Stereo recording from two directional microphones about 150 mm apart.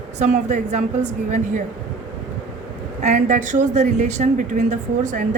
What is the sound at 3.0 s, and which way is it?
A woman's voice, 55° right (ahead or behind).